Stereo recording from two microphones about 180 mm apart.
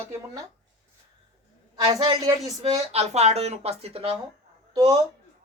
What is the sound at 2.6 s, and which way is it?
A woman's voice, 35° right (ahead or behind).